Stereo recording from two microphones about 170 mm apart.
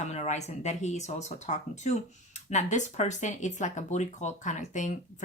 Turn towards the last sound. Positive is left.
turn(degrees=45)  # may be behind; listen again after turning